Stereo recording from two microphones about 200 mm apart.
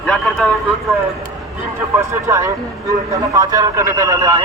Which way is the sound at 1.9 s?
15° right (ahead or behind).